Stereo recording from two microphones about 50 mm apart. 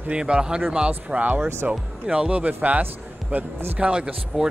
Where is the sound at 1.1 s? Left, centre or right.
Right.